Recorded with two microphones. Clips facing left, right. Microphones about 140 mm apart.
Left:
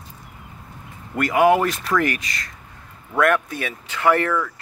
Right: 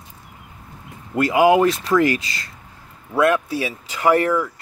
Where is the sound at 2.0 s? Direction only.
30° right (ahead or behind).